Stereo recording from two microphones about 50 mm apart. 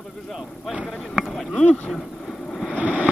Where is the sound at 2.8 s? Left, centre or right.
Right.